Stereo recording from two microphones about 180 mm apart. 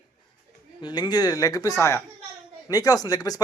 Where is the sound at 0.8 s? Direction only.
25° left (ahead or behind).